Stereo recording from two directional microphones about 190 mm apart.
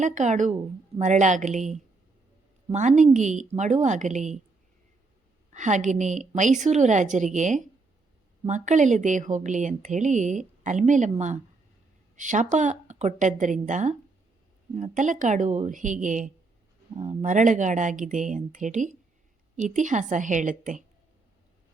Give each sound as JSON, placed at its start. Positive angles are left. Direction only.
{"t": 0.0, "sound": "a woman's voice", "side_deg": -40}
{"t": 5.5, "sound": "a woman's voice", "side_deg": -40}